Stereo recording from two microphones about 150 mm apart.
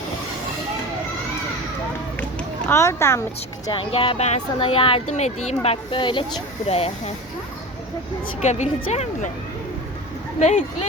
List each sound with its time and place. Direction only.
2.6 s speech: 15° left (ahead or behind)
3.7 s speech: 35° left (ahead or behind)
8.4 s speech: 50° left (ahead or behind)
10.4 s speech: 50° left (ahead or behind)